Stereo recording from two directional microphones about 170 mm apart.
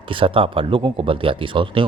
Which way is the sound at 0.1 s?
30° right (ahead or behind).